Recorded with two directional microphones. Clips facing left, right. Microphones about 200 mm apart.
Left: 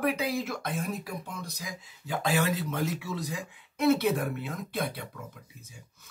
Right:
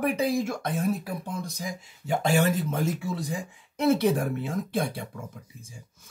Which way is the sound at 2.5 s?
50° right (ahead or behind).